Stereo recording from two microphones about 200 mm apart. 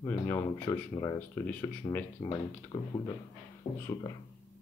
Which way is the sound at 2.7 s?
20° left (ahead or behind).